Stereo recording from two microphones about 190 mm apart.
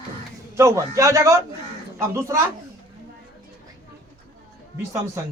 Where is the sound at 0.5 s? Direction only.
15° right (ahead or behind).